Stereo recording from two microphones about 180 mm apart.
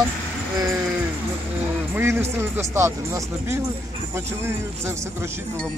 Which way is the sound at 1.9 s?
15° right (ahead or behind).